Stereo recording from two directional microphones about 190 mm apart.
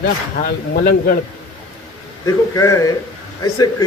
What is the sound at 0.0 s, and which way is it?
Speech, 55° left (ahead or behind).